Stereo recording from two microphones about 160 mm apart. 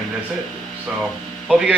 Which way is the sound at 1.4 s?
5° right (ahead or behind).